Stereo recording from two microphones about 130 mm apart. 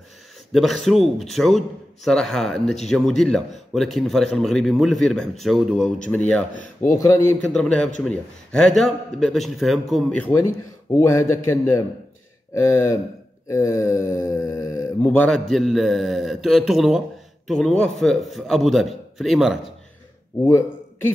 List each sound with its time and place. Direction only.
0.5 s speech: centre (ahead or behind)
10.1 s speech: 10° left (ahead or behind)
10.4 s a man's voice: 20° left (ahead or behind)
15.0 s speech: 10° left (ahead or behind)
20.4 s speech: 20° left (ahead or behind)